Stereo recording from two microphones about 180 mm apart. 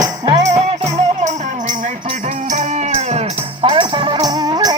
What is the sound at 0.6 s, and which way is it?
Music, 40° right (ahead or behind).